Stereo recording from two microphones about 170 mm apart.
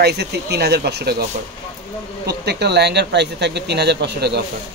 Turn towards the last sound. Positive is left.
turn(degrees=-80)